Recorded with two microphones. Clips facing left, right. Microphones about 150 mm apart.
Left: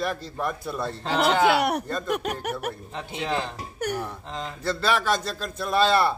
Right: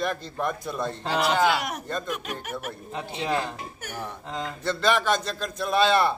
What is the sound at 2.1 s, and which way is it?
Speech, 65° left (ahead or behind).